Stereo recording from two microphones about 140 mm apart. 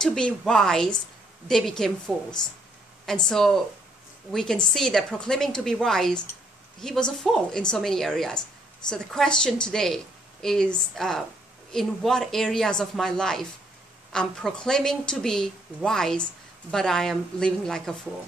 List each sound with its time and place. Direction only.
0.0 s a woman's voice: 5° left (ahead or behind)